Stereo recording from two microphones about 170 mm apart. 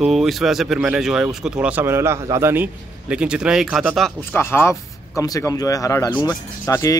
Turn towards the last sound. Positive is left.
turn(degrees=20)  # may be behind; listen again after turning